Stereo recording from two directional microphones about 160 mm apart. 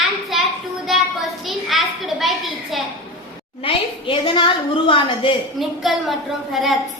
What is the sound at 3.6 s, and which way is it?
A woman's voice, 35° left (ahead or behind).